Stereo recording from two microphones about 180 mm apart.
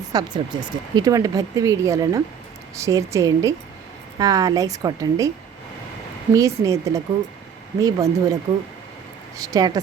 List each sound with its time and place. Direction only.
0.1 s a woman's voice: 20° right (ahead or behind)
6.3 s a woman's voice: 15° right (ahead or behind)
9.4 s speech: 20° right (ahead or behind)